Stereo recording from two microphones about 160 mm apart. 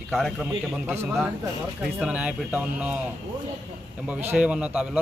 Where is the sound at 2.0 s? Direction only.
5° right (ahead or behind).